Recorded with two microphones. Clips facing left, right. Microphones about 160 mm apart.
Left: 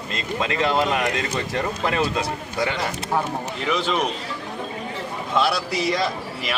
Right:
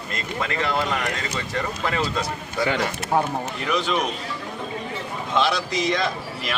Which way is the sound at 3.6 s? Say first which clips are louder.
Left 1 dB; centre (ahead or behind).